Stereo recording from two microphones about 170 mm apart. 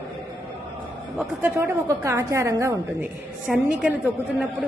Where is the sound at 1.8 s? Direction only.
20° right (ahead or behind).